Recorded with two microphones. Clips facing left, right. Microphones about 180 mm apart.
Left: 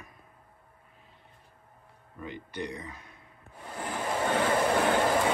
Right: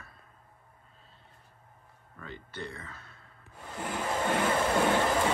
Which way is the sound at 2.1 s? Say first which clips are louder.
Left 5 dB; 15° left (ahead or behind).